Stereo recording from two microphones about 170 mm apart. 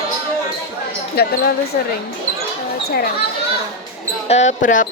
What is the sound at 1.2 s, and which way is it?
Speech, 70° left (ahead or behind).